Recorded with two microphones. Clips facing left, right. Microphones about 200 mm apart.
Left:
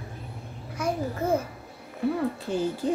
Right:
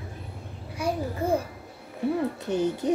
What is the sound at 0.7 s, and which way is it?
Babbling, 15° right (ahead or behind).